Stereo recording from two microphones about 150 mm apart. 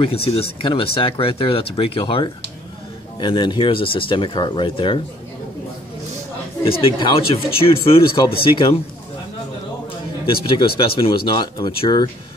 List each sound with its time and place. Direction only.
0.0 s speech: 40° left (ahead or behind)
6.6 s speech: 35° left (ahead or behind)
10.2 s speech: 35° left (ahead or behind)